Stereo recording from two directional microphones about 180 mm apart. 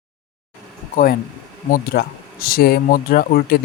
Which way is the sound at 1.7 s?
55° left (ahead or behind).